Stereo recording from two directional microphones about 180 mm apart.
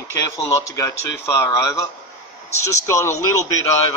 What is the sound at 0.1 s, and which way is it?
Speech, 15° left (ahead or behind).